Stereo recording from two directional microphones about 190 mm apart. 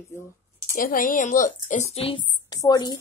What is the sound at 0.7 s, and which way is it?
A woman's voice, 45° left (ahead or behind).